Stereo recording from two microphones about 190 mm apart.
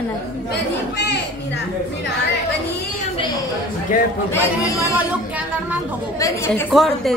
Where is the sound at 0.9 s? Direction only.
60° left (ahead or behind).